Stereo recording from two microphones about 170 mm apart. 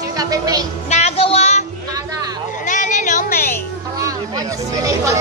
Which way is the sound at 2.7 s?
50° left (ahead or behind).